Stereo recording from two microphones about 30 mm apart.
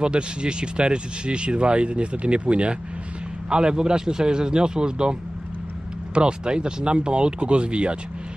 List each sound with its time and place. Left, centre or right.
0.0 s speech: right
3.4 s speech: right
6.1 s speech: right